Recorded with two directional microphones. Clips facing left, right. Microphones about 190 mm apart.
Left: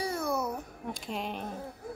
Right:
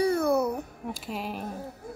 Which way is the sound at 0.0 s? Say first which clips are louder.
Right 8 dB; 60° right (ahead or behind).